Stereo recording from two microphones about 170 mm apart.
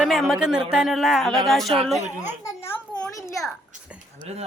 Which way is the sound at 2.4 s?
20° left (ahead or behind).